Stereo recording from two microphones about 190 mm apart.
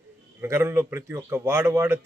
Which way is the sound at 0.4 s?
15° right (ahead or behind).